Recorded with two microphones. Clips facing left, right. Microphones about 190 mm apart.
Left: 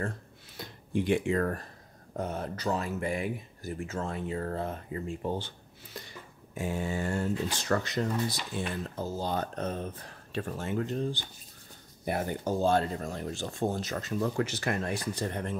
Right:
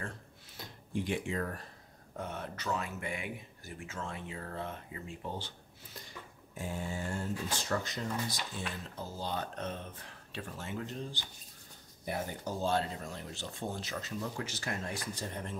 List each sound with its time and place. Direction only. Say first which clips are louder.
0.6 s speech: left 6 dB; 70° left (ahead or behind)
2.1 s speech: left 6 dB; 40° left (ahead or behind)
5.9 s speech: left 4 dB; 75° left (ahead or behind)